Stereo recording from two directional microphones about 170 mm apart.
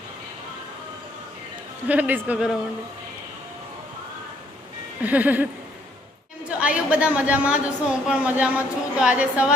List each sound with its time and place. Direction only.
1.9 s a woman's voice: 10° right (ahead or behind)
5.0 s a woman's voice: 10° right (ahead or behind)
6.5 s a woman's voice: 5° right (ahead or behind)